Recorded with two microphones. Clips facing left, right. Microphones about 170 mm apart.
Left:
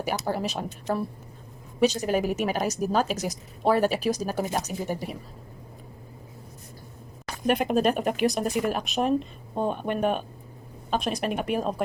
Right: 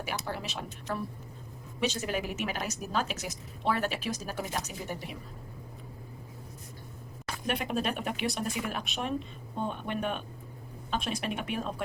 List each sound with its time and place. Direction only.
0.0 s a woman's voice: 40° left (ahead or behind)
7.4 s speech: 45° left (ahead or behind)